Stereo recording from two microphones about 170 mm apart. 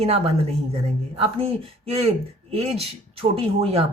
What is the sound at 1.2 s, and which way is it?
Speech, 35° right (ahead or behind).